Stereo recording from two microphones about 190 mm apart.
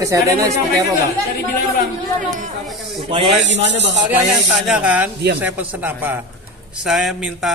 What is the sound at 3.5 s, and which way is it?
Speech, 70° right (ahead or behind).